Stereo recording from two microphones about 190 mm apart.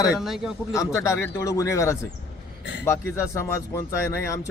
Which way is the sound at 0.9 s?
15° left (ahead or behind).